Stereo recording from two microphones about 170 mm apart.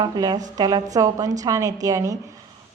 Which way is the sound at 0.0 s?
20° right (ahead or behind).